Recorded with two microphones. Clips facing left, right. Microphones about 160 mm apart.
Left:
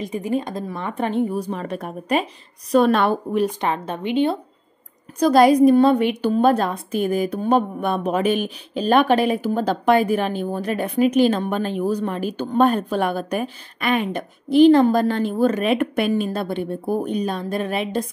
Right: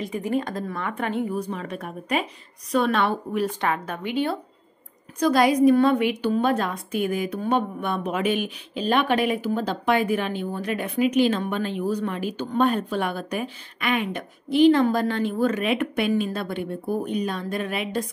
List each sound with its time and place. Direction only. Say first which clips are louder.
0.0 s a woman's voice: left 2 dB; 20° left (ahead or behind)
1.2 s a woman's voice: left 4 dB; 35° left (ahead or behind)
3.3 s a woman's voice: left 3 dB; 25° left (ahead or behind)
5.2 s a woman's voice: left 5 dB; 35° left (ahead or behind)